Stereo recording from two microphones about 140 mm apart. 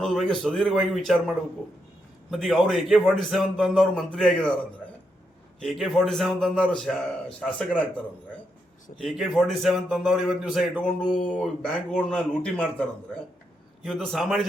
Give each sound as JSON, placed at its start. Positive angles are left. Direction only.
{"t": 0.0, "sound": "a man's voice", "side_deg": 0}
{"t": 2.3, "sound": "a man's voice", "side_deg": 0}
{"t": 5.6, "sound": "a man's voice", "side_deg": 0}
{"t": 9.0, "sound": "a man's voice", "side_deg": 0}